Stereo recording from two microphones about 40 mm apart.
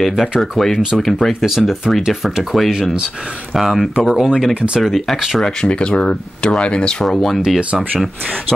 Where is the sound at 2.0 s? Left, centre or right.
Centre.